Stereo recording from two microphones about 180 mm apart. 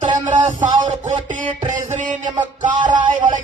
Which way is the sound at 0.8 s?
40° right (ahead or behind).